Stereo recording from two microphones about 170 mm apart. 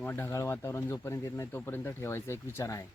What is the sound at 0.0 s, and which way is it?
Speech, 15° left (ahead or behind).